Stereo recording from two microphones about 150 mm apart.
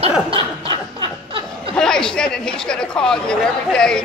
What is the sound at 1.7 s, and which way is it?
Speech, 5° left (ahead or behind).